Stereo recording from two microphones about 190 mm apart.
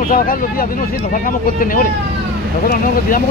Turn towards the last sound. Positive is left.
turn(degrees=45)  # may be behind; listen again after turning